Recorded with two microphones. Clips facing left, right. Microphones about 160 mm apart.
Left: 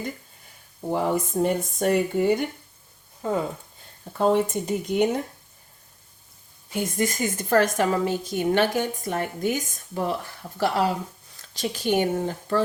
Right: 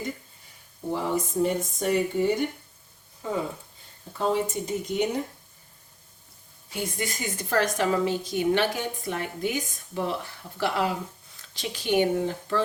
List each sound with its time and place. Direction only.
0.9 s speech: 55° left (ahead or behind)
4.2 s speech: 55° left (ahead or behind)
6.7 s a woman's voice: 50° left (ahead or behind)